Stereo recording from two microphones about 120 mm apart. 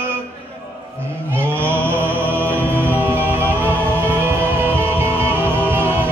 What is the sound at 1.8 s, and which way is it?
Music, 15° right (ahead or behind).